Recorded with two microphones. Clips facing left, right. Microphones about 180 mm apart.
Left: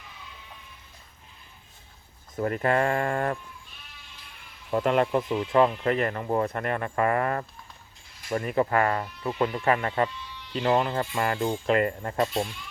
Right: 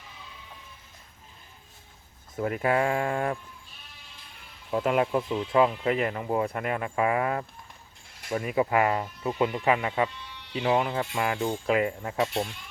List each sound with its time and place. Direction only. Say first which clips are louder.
2.3 s speech: left 1 dB; 5° right (ahead or behind)
4.7 s speech: left 1 dB; 5° right (ahead or behind)
10.2 s sheep: left 2 dB; 65° right (ahead or behind)
10.6 s speech: left 1 dB; 5° right (ahead or behind)